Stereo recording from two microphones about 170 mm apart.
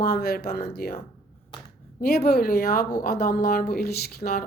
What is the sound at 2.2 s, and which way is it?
A woman's voice, 65° left (ahead or behind).